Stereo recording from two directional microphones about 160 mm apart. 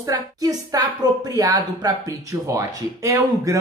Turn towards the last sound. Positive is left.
turn(degrees=-20)  # may be behind; listen again after turning